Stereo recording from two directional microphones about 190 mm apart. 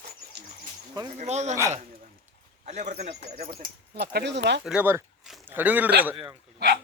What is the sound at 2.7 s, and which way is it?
Speech, 35° right (ahead or behind).